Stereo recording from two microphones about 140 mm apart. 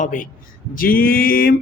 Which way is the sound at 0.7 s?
90° left.